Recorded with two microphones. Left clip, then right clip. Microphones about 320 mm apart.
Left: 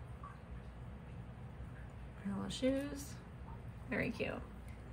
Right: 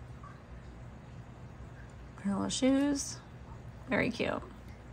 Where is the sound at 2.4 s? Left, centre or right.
Centre.